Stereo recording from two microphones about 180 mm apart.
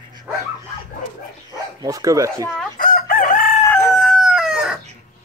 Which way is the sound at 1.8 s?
20° right (ahead or behind).